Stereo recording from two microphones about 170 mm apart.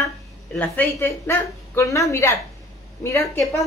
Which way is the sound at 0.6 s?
10° left (ahead or behind).